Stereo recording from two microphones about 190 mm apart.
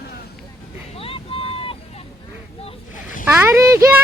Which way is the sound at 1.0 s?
30° left (ahead or behind).